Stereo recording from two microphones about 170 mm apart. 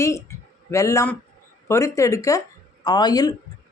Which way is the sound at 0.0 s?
15° left (ahead or behind).